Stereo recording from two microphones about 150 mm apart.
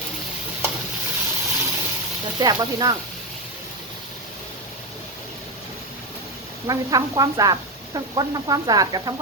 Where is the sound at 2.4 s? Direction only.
25° right (ahead or behind).